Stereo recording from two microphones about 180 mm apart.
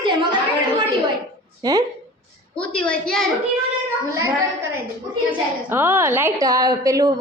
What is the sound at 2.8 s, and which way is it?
Speech, 5° left (ahead or behind).